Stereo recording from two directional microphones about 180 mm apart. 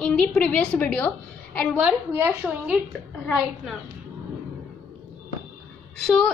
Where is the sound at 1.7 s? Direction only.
10° right (ahead or behind).